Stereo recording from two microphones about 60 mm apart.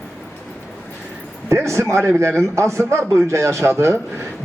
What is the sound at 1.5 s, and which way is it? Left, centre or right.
A man's voice, right.